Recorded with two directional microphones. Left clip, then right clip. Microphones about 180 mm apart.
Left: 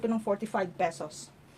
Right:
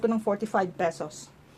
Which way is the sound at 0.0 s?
30° right (ahead or behind).